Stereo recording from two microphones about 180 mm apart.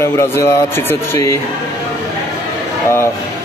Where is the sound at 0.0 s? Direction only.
15° left (ahead or behind).